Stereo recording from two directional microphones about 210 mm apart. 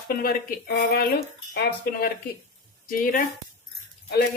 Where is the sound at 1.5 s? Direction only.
50° left (ahead or behind).